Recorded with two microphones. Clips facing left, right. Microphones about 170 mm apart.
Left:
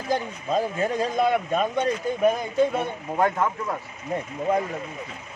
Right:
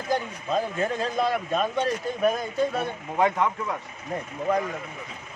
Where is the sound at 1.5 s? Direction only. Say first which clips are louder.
Left 2 dB; 15° left (ahead or behind).